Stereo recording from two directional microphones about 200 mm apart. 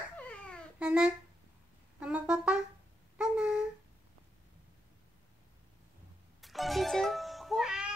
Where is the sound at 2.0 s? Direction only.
5° right (ahead or behind).